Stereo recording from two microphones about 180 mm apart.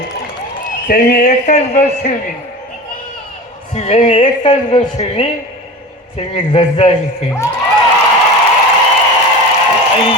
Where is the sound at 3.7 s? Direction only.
35° left (ahead or behind).